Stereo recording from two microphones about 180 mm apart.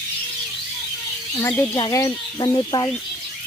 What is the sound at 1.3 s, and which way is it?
Speech, 15° left (ahead or behind).